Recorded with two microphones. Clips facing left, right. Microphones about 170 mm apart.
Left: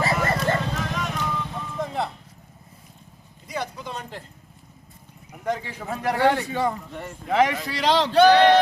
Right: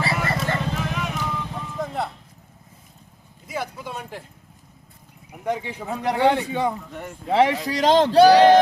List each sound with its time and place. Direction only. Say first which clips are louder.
0.0 s music: left 2 dB; 45° left (ahead or behind)
0.8 s vehicle: right 1 dB; 10° right (ahead or behind)
3.4 s a sound: right 1 dB; 5° right (ahead or behind)
5.5 s a man's voice: right 1 dB; 15° right (ahead or behind)
7.3 s speech: right 2 dB; 30° right (ahead or behind)
7.7 s speech: right 4 dB; 45° right (ahead or behind)